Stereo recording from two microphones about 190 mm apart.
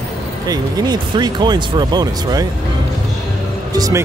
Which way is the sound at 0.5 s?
20° right (ahead or behind).